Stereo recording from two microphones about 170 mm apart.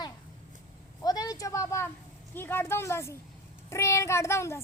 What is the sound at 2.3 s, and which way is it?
A woman's voice, 15° left (ahead or behind).